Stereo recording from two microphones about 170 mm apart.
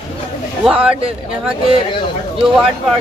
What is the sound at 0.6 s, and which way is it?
Speech, 5° right (ahead or behind).